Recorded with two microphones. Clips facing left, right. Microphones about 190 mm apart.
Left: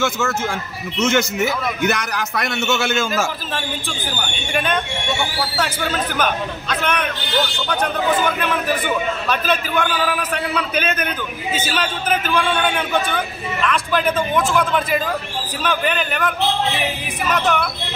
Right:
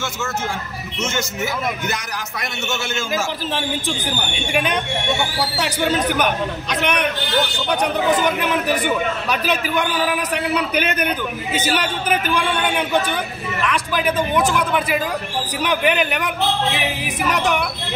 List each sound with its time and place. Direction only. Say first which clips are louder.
0.9 s a man's voice: left 7 dB; 65° left (ahead or behind)
5.6 s a man's voice: right 3 dB; 15° right (ahead or behind)
15.6 s a man's voice: right 2 dB; 15° right (ahead or behind)